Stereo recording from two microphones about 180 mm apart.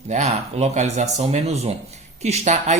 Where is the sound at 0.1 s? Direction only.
40° right (ahead or behind).